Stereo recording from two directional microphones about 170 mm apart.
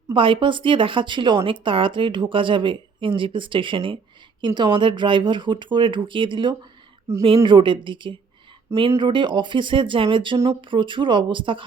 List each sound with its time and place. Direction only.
0.1 s speech: 30° right (ahead or behind)